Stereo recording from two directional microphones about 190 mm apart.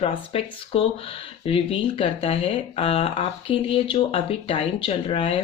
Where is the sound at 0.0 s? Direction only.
30° left (ahead or behind).